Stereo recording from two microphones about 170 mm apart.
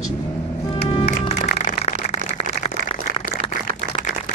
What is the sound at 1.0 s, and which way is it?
Music, 35° left (ahead or behind).